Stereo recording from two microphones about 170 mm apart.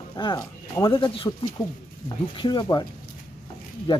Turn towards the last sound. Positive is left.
turn(degrees=30)  # may be behind; listen again after turning